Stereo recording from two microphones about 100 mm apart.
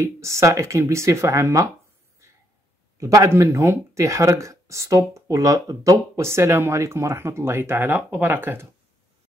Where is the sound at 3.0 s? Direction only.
35° right (ahead or behind).